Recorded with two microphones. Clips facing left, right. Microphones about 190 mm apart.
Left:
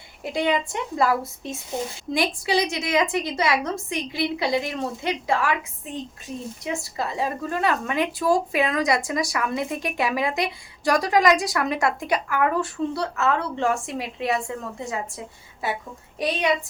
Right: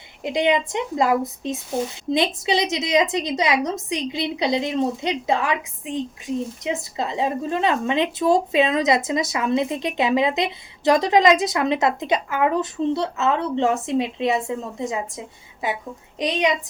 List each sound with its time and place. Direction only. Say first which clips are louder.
0.2 s a woman's voice: right 3 dB; 20° right (ahead or behind)